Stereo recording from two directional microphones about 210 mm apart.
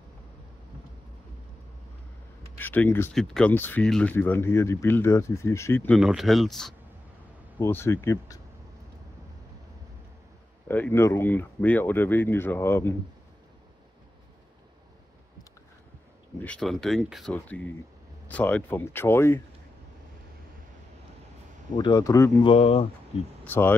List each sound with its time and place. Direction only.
2.6 s speech: 10° left (ahead or behind)
5.9 s speech: centre (ahead or behind)
10.7 s speech: 10° left (ahead or behind)
16.4 s speech: 5° left (ahead or behind)
21.7 s speech: 20° left (ahead or behind)
22.4 s speech: 25° left (ahead or behind)
23.4 s speech: 10° left (ahead or behind)